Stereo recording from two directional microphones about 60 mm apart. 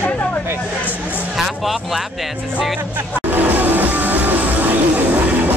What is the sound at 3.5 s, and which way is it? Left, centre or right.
Music, right.